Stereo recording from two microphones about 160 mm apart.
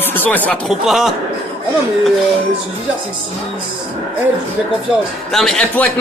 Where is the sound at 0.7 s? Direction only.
Centre (ahead or behind).